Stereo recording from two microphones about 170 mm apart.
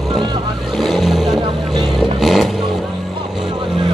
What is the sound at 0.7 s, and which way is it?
Vehicle, centre (ahead or behind).